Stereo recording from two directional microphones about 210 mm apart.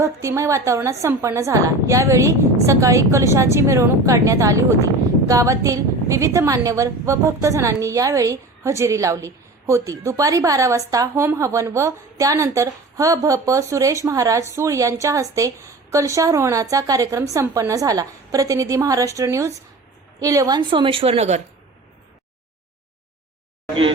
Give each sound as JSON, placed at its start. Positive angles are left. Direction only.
{"t": 0.0, "sound": "a woman's voice", "side_deg": -15}